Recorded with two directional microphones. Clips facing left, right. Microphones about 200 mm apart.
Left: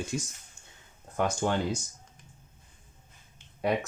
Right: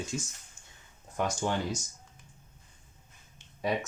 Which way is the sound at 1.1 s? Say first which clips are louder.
Left 3 dB; 55° left (ahead or behind).